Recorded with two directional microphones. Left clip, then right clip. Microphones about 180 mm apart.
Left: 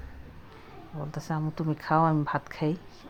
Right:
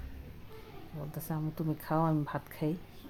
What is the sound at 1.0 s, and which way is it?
Speech, 15° left (ahead or behind).